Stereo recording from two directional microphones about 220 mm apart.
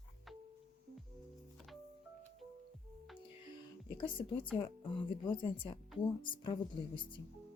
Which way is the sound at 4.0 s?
25° left (ahead or behind).